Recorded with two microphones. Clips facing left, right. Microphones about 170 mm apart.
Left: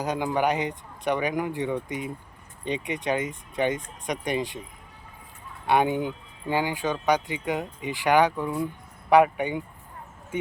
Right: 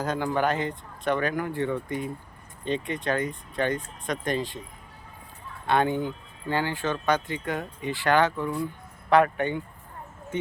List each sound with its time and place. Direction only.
0.0 s speech: 15° left (ahead or behind)
5.6 s speech: 15° left (ahead or behind)